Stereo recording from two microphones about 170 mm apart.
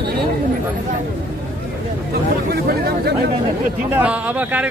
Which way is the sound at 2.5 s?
65° right (ahead or behind).